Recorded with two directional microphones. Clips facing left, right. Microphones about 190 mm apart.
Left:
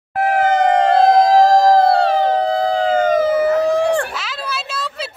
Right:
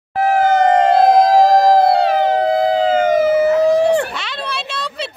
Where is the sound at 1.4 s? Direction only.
10° right (ahead or behind).